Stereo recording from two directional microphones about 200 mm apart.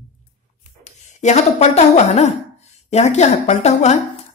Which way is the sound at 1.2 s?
35° left (ahead or behind).